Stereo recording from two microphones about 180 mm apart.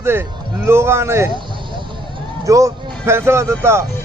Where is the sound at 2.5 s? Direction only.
15° right (ahead or behind).